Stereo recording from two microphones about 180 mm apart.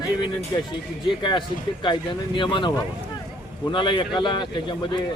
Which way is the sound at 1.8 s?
25° left (ahead or behind).